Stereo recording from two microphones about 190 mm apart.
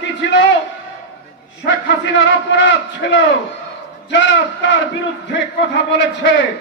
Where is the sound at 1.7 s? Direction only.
70° left (ahead or behind).